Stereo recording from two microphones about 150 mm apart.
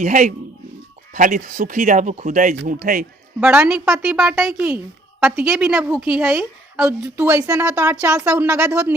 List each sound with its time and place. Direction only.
0.0 s a man's voice: 60° right (ahead or behind)
3.4 s a woman's voice: 10° right (ahead or behind)